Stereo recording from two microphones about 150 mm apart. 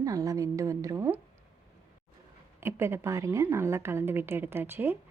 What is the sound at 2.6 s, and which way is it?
A woman's voice, 15° right (ahead or behind).